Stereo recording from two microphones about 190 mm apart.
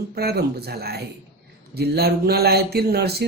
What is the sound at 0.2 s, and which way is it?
A man's voice, 55° right (ahead or behind).